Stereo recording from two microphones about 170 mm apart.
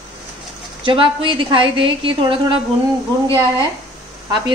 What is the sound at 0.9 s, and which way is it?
Speech, 30° right (ahead or behind).